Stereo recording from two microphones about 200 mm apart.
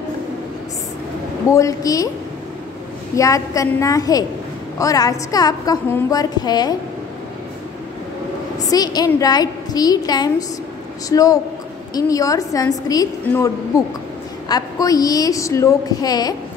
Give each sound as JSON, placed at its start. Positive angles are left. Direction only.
{"t": 1.5, "sound": "a woman's voice", "side_deg": 15}
{"t": 3.2, "sound": "a woman's voice", "side_deg": 15}
{"t": 8.6, "sound": "a woman's voice", "side_deg": 20}